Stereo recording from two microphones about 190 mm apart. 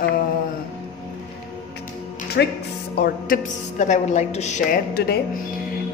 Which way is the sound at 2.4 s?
60° left (ahead or behind).